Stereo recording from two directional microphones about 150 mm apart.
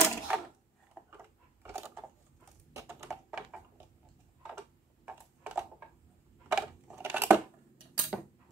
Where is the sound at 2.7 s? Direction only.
20° right (ahead or behind).